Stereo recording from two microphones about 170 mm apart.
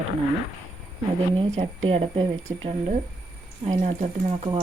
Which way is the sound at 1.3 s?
35° right (ahead or behind).